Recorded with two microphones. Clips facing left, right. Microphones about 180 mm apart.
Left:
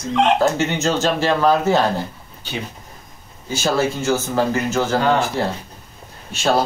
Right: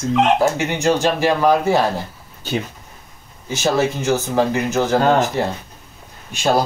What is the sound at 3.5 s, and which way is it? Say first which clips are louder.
Speech: right 1 dB; 20° right (ahead or behind).